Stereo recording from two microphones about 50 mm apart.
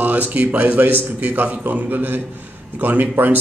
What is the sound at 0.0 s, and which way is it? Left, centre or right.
A man's voice, right.